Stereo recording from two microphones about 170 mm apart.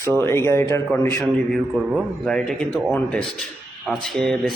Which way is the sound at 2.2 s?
5° left (ahead or behind).